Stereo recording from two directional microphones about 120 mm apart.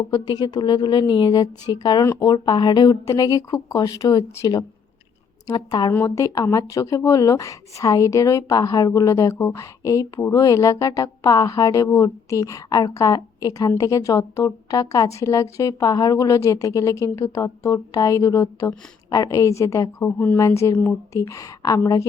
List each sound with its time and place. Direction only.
0.1 s a woman's voice: 35° left (ahead or behind)